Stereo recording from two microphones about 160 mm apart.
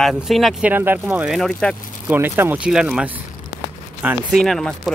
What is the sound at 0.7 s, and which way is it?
Speech, 10° right (ahead or behind).